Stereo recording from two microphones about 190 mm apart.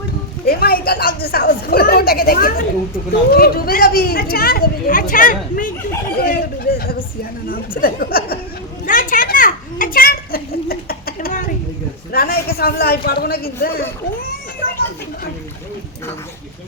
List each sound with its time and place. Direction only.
0.4 s speech: 55° left (ahead or behind)
6.1 s a sound: 55° left (ahead or behind)
7.8 s speech: 50° left (ahead or behind)
8.9 s children playing: 45° left (ahead or behind)
12.1 s speech: 55° left (ahead or behind)